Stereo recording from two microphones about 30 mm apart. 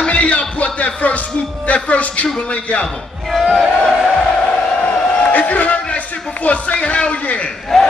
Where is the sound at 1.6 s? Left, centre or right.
Left.